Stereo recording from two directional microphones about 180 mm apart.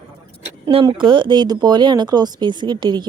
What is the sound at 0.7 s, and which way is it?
Speech, 25° right (ahead or behind).